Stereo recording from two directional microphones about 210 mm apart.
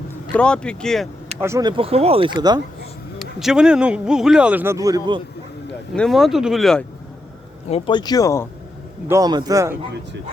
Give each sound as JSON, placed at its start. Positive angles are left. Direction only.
{"t": 0.3, "sound": "a man's voice", "side_deg": 5}
{"t": 1.4, "sound": "speech", "side_deg": -15}
{"t": 3.3, "sound": "a man's voice", "side_deg": 0}
{"t": 5.9, "sound": "a man's voice", "side_deg": 0}
{"t": 7.7, "sound": "speech", "side_deg": 20}
{"t": 9.0, "sound": "a man's voice", "side_deg": -15}